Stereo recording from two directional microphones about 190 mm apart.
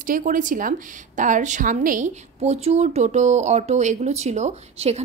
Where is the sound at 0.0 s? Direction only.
45° right (ahead or behind).